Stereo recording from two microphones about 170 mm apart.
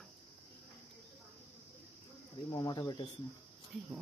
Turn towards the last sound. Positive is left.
turn(degrees=25)  # may be behind; listen again after turning